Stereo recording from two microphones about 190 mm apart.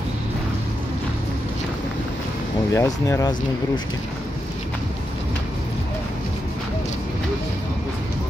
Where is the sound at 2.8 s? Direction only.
15° left (ahead or behind).